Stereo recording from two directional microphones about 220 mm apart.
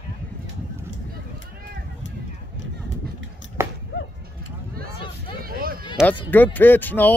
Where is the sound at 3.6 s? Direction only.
10° right (ahead or behind).